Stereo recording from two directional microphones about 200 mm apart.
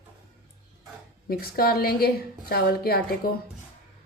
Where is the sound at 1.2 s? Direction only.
50° left (ahead or behind).